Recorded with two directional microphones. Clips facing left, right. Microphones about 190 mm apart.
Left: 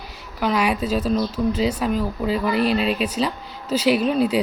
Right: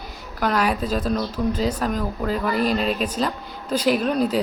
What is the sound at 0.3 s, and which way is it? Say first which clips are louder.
Speech: left 1 dB; 5° left (ahead or behind).